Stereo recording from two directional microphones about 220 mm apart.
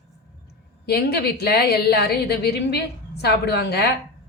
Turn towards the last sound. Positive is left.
turn(degrees=45)  # may be behind; listen again after turning